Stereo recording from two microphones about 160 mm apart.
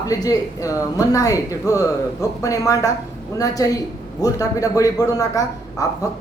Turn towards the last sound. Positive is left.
turn(degrees=20)  # may be behind; listen again after turning